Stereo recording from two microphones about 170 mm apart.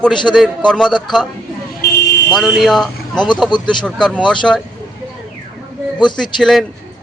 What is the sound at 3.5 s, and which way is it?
Speech, 25° left (ahead or behind).